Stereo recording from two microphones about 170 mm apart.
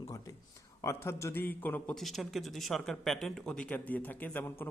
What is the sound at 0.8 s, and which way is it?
A man's voice, 15° left (ahead or behind).